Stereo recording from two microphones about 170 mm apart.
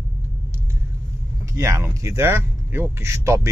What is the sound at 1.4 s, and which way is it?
A man's voice, 20° right (ahead or behind).